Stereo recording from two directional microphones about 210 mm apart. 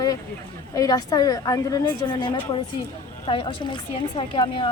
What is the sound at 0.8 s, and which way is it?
A woman's voice, 20° left (ahead or behind).